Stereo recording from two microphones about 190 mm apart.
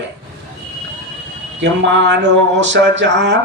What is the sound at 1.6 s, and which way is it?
Speech, 70° right (ahead or behind).